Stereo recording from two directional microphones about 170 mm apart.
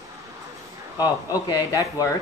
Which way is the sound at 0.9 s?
20° left (ahead or behind).